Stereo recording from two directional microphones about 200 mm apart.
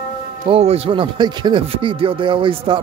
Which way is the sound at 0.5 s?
30° right (ahead or behind).